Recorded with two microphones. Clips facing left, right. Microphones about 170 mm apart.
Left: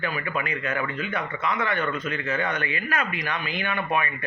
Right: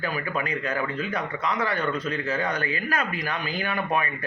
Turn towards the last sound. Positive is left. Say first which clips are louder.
# even
turn(degrees=-35)  # may be behind; listen again after turning